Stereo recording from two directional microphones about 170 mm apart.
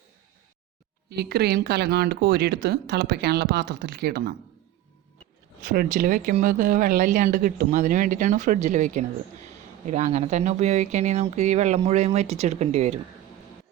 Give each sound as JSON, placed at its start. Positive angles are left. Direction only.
{"t": 1.1, "sound": "speech", "side_deg": -70}
{"t": 5.6, "sound": "speech", "side_deg": -55}